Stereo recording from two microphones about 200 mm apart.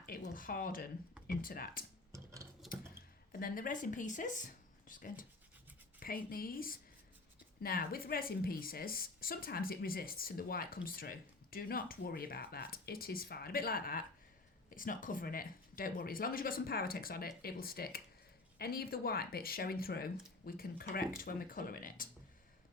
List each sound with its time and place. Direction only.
0.0 s speech: 45° left (ahead or behind)
2.1 s a sound: 15° right (ahead or behind)
3.4 s speech: 45° left (ahead or behind)